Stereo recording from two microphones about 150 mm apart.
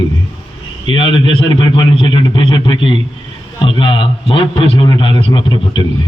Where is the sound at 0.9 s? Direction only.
35° left (ahead or behind).